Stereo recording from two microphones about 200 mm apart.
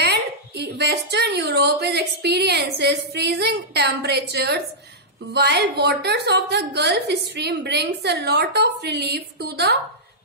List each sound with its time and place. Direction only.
0.0 s a woman's voice: 55° right (ahead or behind)